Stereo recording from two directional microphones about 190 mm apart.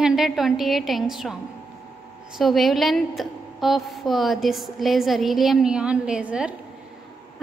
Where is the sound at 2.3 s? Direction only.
Centre (ahead or behind).